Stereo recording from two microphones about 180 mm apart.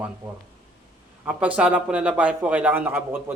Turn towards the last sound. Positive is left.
turn(degrees=-10)  # may be behind; listen again after turning